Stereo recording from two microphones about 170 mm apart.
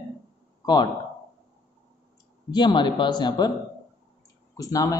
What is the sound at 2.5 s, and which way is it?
Speech, 25° left (ahead or behind).